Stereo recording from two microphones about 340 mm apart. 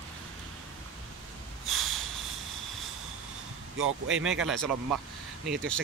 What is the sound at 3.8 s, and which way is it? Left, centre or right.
Speech, right.